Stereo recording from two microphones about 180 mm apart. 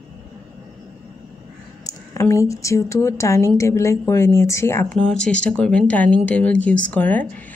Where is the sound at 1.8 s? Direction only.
15° left (ahead or behind).